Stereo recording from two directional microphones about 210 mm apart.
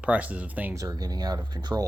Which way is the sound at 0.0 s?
5° right (ahead or behind).